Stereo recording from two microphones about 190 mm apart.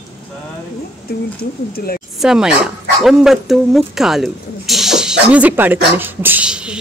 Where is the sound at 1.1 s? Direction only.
55° left (ahead or behind).